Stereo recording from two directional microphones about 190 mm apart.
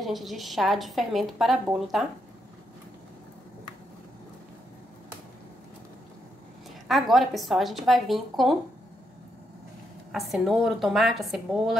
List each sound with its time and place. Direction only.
0.0 s a woman's voice: centre (ahead or behind)
6.9 s a woman's voice: centre (ahead or behind)
10.1 s a woman's voice: centre (ahead or behind)